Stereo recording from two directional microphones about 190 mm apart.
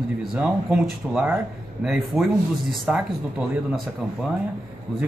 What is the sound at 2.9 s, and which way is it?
Speech, 5° right (ahead or behind).